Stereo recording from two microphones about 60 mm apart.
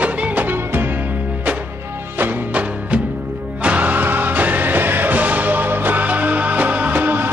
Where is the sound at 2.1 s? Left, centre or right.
Right.